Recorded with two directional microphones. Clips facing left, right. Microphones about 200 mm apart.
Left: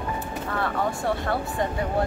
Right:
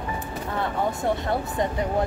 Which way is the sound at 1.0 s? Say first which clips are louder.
Right 1 dB; 20° right (ahead or behind).